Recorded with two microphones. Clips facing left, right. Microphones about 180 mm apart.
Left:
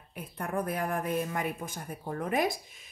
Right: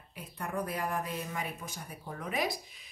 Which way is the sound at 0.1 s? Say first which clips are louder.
Left 4 dB; 50° left (ahead or behind).